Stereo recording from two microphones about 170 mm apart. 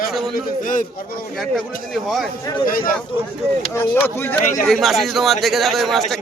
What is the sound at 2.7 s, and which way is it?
Speech, 55° left (ahead or behind).